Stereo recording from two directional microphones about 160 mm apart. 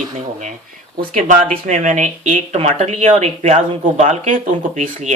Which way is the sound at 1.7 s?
50° right (ahead or behind).